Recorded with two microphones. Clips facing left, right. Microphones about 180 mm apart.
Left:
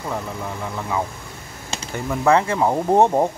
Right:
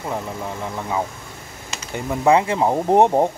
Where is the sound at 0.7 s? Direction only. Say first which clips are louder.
Even; 20° right (ahead or behind).